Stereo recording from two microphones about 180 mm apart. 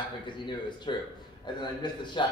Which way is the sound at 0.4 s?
25° left (ahead or behind).